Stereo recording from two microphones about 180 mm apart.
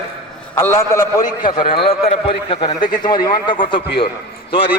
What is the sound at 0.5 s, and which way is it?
Speech, 15° left (ahead or behind).